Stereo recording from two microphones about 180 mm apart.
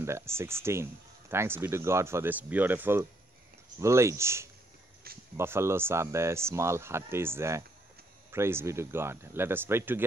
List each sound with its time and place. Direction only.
0.0 s speech: 15° right (ahead or behind)
5.1 s a sound: 60° right (ahead or behind)
5.4 s speech: 15° right (ahead or behind)